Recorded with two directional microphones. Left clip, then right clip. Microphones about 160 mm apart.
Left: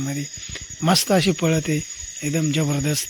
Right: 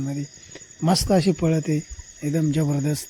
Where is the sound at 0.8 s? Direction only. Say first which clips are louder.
Left 2 dB; 20° right (ahead or behind).